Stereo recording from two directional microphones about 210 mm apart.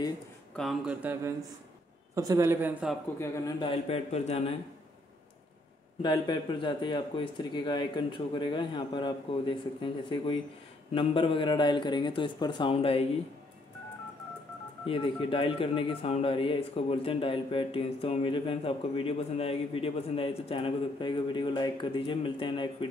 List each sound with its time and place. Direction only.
0.6 s a man's voice: 5° right (ahead or behind)
3.2 s speech: 20° left (ahead or behind)
6.0 s speech: 20° left (ahead or behind)
14.9 s speech: 25° left (ahead or behind)